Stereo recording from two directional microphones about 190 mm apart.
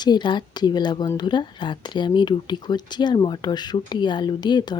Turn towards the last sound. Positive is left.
turn(degrees=20)  # may be behind; listen again after turning